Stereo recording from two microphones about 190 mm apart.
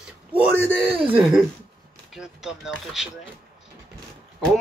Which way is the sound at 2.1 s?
5° right (ahead or behind).